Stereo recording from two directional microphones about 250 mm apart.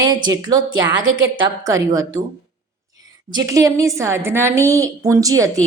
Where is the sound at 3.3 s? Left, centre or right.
Centre.